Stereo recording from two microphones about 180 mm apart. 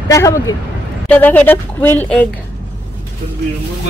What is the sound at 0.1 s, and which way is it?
A woman's voice, 15° left (ahead or behind).